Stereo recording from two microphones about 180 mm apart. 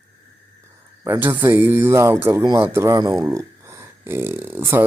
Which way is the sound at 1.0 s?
15° right (ahead or behind).